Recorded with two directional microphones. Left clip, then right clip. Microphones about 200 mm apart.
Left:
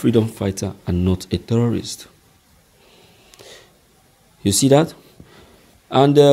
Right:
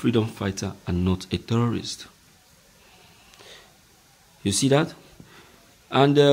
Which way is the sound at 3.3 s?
25° left (ahead or behind).